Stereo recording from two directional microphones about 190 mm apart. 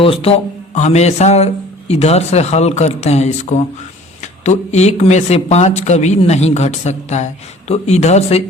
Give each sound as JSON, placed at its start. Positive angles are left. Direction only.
{"t": 0.0, "sound": "speech", "side_deg": 30}